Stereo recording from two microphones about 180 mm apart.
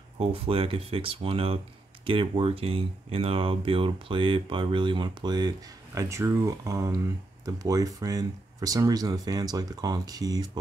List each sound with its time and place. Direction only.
0.2 s speech: 30° right (ahead or behind)